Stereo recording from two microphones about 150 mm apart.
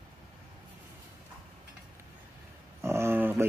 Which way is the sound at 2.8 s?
20° right (ahead or behind).